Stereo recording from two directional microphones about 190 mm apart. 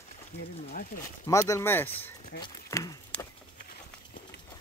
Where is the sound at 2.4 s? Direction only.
20° left (ahead or behind).